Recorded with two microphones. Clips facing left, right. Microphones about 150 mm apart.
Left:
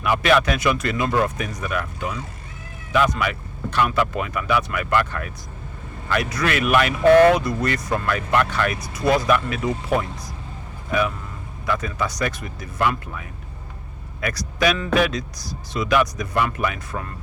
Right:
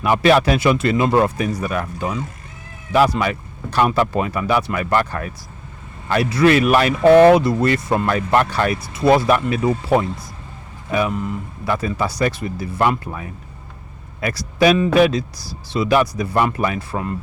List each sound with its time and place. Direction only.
0.0 s speech: 30° right (ahead or behind)
11.6 s speech: 30° right (ahead or behind)
14.2 s speech: 30° right (ahead or behind)